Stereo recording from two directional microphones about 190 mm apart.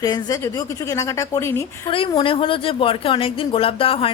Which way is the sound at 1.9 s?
25° left (ahead or behind).